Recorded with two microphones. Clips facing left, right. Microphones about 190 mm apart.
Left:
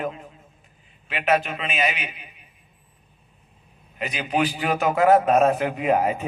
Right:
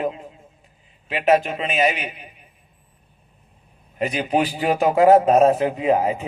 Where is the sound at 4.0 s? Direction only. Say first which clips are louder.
Right 3 dB; 35° right (ahead or behind).